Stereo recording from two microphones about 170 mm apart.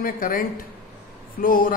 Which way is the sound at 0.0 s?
55° left (ahead or behind).